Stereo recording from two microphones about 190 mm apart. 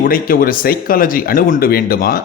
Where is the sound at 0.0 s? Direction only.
50° left (ahead or behind).